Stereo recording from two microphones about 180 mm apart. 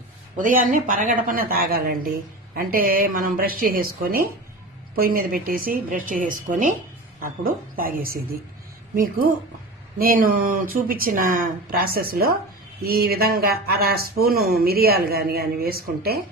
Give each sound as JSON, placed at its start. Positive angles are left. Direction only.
{"t": 0.3, "sound": "speech", "side_deg": -50}
{"t": 10.0, "sound": "speech", "side_deg": -55}